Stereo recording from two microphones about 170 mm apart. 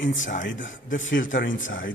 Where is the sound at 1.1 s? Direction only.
50° left (ahead or behind).